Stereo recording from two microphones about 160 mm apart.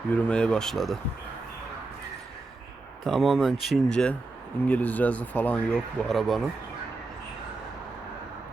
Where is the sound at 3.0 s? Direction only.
Centre (ahead or behind).